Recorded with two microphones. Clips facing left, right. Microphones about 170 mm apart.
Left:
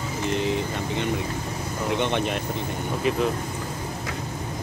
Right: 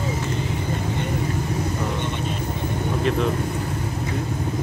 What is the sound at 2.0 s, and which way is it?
Speech, 90° left.